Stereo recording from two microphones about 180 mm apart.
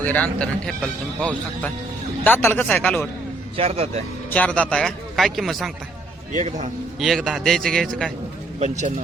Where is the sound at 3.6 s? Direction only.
35° right (ahead or behind).